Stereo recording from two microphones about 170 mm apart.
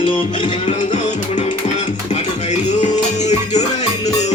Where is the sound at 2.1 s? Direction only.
45° left (ahead or behind).